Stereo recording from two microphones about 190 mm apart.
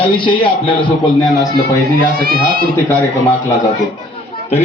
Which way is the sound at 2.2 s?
50° right (ahead or behind).